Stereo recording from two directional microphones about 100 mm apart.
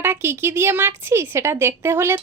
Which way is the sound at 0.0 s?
20° right (ahead or behind).